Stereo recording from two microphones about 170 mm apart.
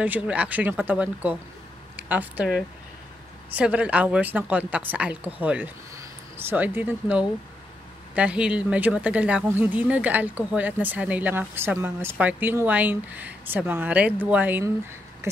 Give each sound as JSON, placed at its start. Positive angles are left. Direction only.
{"t": 0.0, "sound": "a woman's voice", "side_deg": -10}